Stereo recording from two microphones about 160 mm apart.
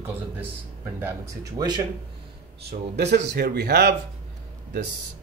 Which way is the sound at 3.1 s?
90° right.